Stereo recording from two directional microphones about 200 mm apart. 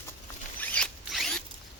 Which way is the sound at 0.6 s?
5° left (ahead or behind).